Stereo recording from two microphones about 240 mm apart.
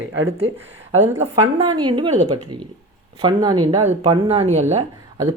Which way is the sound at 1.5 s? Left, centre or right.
Centre.